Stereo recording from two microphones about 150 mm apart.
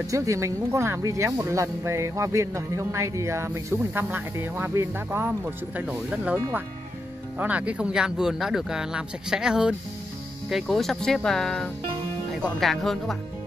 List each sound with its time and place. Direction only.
0.0 s speech: 20° right (ahead or behind); by 13.2 s centre (ahead or behind)